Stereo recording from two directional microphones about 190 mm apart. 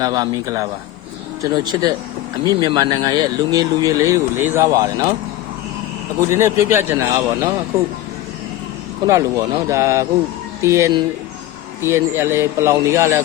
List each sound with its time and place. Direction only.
0.0 s a man's voice: 20° right (ahead or behind)
6.3 s a man's voice: 15° right (ahead or behind)
9.0 s a man's voice: 15° right (ahead or behind)